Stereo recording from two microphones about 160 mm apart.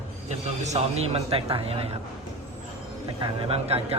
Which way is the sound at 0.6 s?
40° right (ahead or behind).